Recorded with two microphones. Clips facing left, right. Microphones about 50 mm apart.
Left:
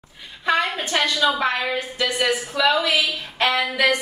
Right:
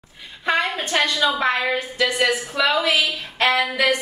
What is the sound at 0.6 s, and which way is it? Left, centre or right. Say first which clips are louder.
Speech: right 1 dB; centre.